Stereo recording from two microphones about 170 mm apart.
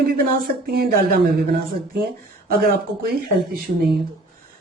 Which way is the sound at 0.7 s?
65° right (ahead or behind).